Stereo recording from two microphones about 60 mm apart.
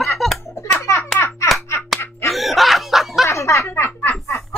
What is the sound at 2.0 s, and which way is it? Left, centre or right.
Slap, left.